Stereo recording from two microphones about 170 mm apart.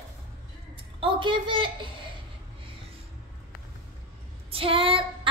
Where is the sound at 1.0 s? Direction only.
30° right (ahead or behind).